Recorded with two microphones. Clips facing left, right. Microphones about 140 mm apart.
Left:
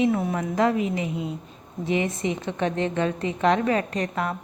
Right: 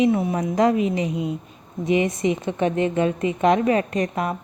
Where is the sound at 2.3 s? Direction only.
15° right (ahead or behind).